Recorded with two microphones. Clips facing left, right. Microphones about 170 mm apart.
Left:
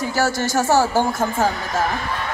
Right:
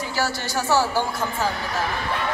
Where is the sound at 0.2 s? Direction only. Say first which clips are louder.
Left 6 dB; 45° left (ahead or behind).